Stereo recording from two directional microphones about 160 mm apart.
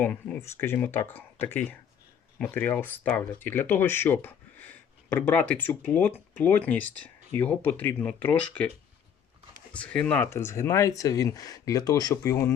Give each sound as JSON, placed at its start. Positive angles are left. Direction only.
{"t": 0.0, "sound": "speech", "side_deg": 10}
{"t": 9.7, "sound": "speech", "side_deg": 5}